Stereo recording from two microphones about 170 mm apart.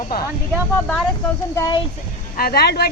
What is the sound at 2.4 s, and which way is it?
Speech, 65° left (ahead or behind).